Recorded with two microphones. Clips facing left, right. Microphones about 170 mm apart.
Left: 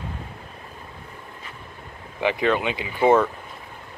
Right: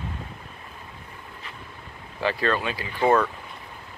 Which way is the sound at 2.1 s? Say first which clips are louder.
Left 3 dB; 15° left (ahead or behind).